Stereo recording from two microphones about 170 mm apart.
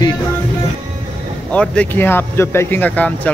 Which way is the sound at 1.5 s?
10° left (ahead or behind).